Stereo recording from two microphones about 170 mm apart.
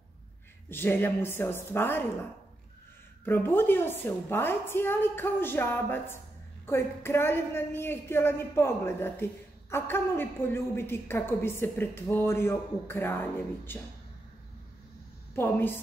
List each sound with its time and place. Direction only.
0.7 s a woman's voice: 15° left (ahead or behind)
3.3 s a woman's voice: 10° left (ahead or behind)
15.3 s a woman's voice: 15° left (ahead or behind)